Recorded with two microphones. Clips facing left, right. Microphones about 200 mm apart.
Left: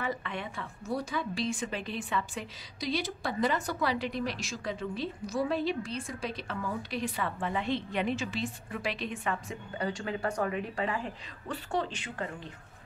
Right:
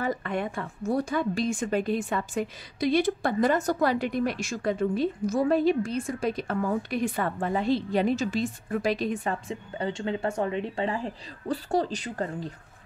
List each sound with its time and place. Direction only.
0.0 s a woman's voice: 45° right (ahead or behind)